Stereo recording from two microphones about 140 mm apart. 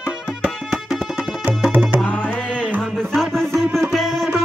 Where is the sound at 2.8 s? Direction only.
5° left (ahead or behind).